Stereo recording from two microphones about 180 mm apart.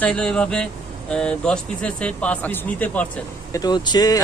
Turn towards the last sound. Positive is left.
turn(degrees=20)  # may be behind; listen again after turning